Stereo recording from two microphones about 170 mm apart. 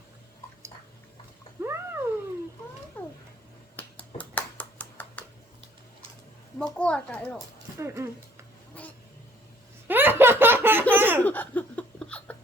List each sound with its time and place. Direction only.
1.6 s cat: 15° right (ahead or behind)
3.0 s cat: 10° left (ahead or behind)
3.8 s finger snapping: 10° left (ahead or behind)
6.6 s a child's voice: 5° left (ahead or behind)
7.8 s speech: 15° right (ahead or behind)
8.7 s a sound: 10° left (ahead or behind)
9.8 s laughter: 10° right (ahead or behind)
10.9 s a sound: 10° right (ahead or behind)
11.2 s laughter: 10° left (ahead or behind)